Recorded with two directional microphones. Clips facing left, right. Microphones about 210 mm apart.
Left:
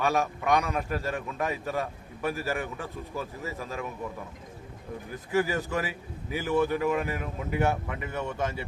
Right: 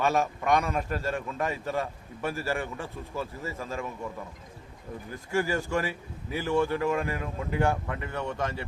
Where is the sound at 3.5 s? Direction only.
Centre (ahead or behind).